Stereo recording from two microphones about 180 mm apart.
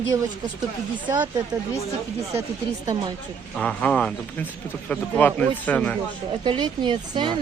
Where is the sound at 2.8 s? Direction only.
20° right (ahead or behind).